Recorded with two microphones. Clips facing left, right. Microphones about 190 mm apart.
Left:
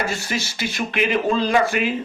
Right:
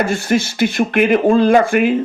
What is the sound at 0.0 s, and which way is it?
Speech, 55° right (ahead or behind).